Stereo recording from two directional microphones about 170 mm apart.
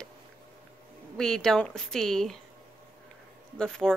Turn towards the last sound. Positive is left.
turn(degrees=5)  # may be behind; listen again after turning